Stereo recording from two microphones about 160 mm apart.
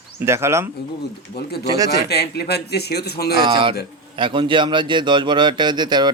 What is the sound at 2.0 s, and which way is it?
Speech, 90° left.